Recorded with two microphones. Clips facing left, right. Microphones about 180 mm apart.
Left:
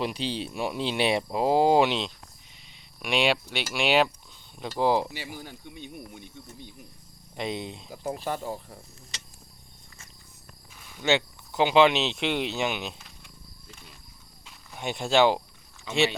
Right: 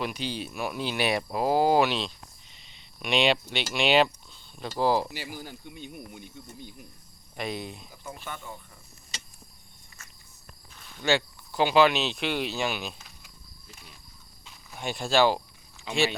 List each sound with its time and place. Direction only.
0.0 s speech: 30° left (ahead or behind)
3.0 s speech: 10° left (ahead or behind)
5.4 s speech: 5° right (ahead or behind)
7.3 s speech: 20° left (ahead or behind)
8.1 s speech: 35° left (ahead or behind)
11.0 s speech: 20° left (ahead or behind)
13.0 s wild animals: 5° right (ahead or behind)
14.8 s speech: 20° left (ahead or behind)